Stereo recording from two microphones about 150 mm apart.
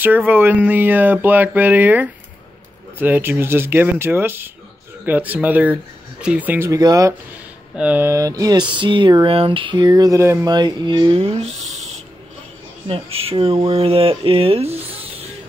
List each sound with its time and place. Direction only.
0.0 s speech: 10° right (ahead or behind)
7.7 s speech: 10° right (ahead or behind)
10.5 s speech: 30° right (ahead or behind)